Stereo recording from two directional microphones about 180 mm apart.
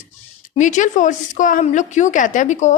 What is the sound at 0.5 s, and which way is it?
A woman's voice, 45° left (ahead or behind).